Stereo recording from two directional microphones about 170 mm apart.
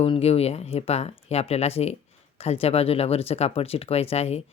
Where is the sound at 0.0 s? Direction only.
35° left (ahead or behind).